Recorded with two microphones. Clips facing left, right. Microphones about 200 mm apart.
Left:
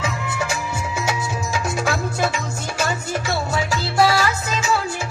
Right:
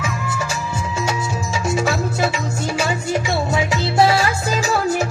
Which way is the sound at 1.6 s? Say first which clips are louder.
Right 5 dB; centre (ahead or behind).